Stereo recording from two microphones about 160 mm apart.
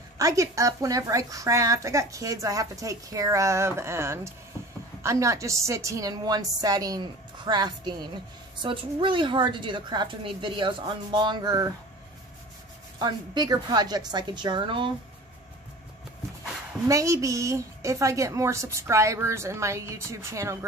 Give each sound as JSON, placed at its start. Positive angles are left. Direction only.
{"t": 0.2, "sound": "speech", "side_deg": -20}
{"t": 13.0, "sound": "speech", "side_deg": -25}
{"t": 16.8, "sound": "speech", "side_deg": -20}